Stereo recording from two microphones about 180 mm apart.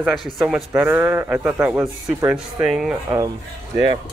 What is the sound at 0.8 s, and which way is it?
A man's voice, 10° right (ahead or behind).